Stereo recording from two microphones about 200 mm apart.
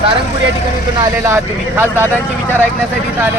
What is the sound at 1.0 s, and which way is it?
Speech, 15° right (ahead or behind).